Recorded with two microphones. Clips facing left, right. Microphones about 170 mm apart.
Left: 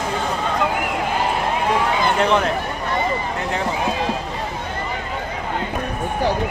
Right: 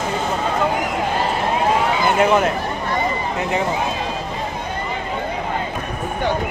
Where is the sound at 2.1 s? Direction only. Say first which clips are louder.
Right 4 dB; 10° right (ahead or behind).